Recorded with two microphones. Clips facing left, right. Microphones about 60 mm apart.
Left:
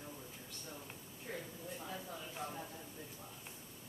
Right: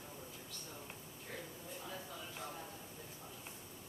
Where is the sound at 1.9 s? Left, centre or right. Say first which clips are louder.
Left 2 dB; left.